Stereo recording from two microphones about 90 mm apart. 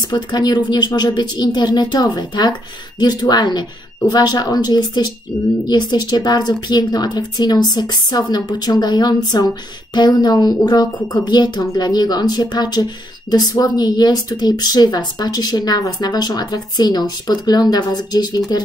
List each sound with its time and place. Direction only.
0.1 s speech: 50° left (ahead or behind)